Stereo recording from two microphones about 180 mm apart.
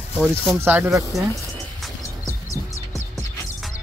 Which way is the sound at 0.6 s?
10° right (ahead or behind).